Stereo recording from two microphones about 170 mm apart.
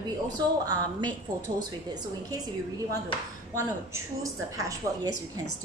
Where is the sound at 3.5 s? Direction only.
15° right (ahead or behind).